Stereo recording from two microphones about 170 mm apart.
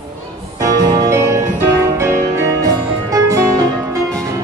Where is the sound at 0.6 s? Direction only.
20° right (ahead or behind).